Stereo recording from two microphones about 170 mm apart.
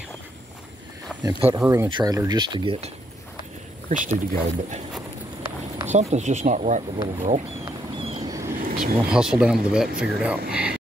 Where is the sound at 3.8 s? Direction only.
50° right (ahead or behind).